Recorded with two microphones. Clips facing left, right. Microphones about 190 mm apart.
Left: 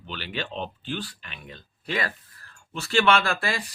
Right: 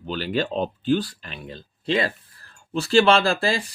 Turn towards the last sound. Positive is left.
turn(degrees=-30)  # may be behind; listen again after turning